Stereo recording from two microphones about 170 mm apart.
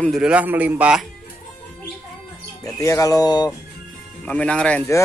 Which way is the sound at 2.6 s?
20° left (ahead or behind).